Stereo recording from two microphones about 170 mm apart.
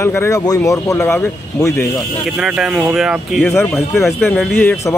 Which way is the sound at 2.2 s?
5° right (ahead or behind).